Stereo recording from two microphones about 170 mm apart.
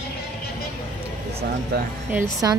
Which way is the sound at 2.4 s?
20° right (ahead or behind).